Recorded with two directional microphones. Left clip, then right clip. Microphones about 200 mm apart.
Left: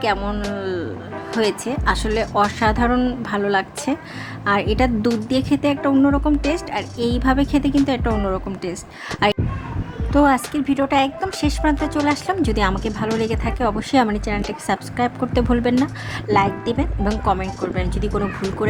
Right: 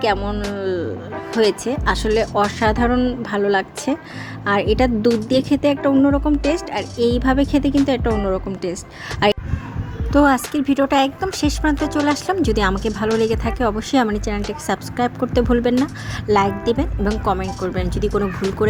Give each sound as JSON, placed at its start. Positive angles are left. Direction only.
{"t": 0.0, "sound": "a woman's voice", "side_deg": 0}